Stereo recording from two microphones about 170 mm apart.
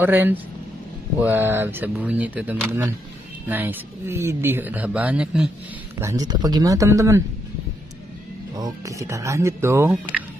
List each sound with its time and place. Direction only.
0.0 s speech: 10° right (ahead or behind)
5.9 s speech: 20° right (ahead or behind)
8.5 s speech: 20° right (ahead or behind)